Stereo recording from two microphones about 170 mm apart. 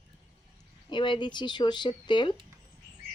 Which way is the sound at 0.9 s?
25° left (ahead or behind).